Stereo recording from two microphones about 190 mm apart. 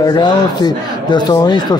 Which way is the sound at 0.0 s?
20° left (ahead or behind).